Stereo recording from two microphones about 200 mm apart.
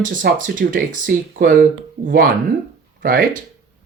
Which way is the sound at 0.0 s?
45° right (ahead or behind).